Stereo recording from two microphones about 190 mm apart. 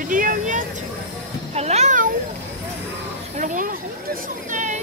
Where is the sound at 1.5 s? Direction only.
35° right (ahead or behind).